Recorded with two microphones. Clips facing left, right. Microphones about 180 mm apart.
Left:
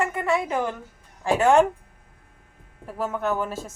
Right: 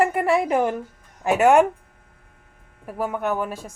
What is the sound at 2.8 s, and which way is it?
Speech, 15° right (ahead or behind).